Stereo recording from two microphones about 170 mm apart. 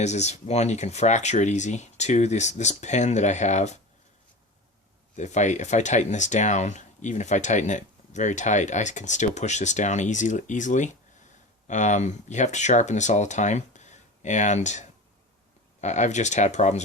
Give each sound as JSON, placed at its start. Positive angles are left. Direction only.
{"t": 0.0, "sound": "speech", "side_deg": 40}
{"t": 5.1, "sound": "speech", "side_deg": 45}